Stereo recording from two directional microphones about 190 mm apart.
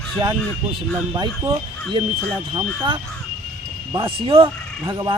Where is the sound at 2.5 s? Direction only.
25° right (ahead or behind).